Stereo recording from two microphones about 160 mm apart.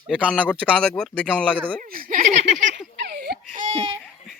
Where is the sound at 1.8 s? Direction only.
60° right (ahead or behind).